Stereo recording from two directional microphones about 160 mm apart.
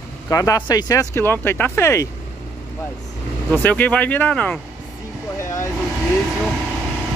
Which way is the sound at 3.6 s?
10° left (ahead or behind).